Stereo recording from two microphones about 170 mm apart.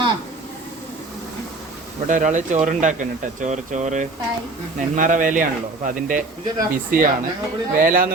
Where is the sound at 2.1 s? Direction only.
50° right (ahead or behind).